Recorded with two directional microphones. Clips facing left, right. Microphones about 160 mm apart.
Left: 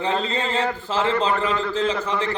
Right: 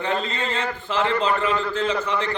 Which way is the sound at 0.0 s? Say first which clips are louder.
Left 2 dB; 30° left (ahead or behind).